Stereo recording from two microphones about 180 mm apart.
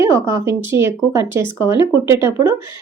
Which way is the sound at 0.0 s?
15° right (ahead or behind).